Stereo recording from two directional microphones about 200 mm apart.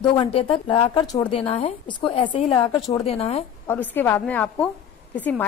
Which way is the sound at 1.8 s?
25° left (ahead or behind).